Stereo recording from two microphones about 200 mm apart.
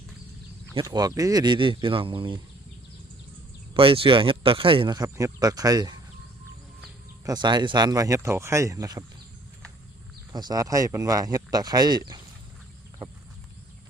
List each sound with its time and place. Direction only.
0.7 s speech: 20° right (ahead or behind)
3.8 s speech: 25° right (ahead or behind)
7.3 s speech: 20° right (ahead or behind)
10.3 s speech: 15° right (ahead or behind)